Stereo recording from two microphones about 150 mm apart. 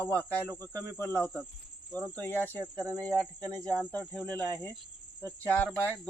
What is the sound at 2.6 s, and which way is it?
Speech, 20° right (ahead or behind).